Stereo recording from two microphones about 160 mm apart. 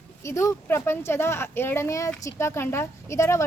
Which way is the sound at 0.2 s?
20° left (ahead or behind).